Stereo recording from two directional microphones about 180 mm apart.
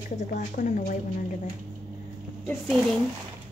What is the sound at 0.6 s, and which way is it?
Speech, 45° left (ahead or behind).